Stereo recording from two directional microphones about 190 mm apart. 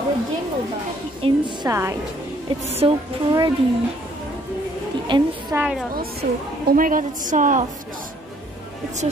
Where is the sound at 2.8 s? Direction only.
30° right (ahead or behind).